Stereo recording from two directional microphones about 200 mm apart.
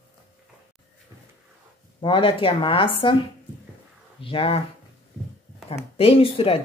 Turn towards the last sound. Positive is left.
turn(degrees=30)  # may be behind; listen again after turning